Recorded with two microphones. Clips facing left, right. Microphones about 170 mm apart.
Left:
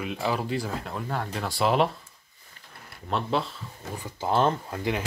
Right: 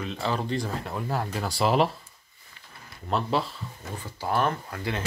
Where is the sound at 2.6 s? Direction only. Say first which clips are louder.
Even; 45° left (ahead or behind).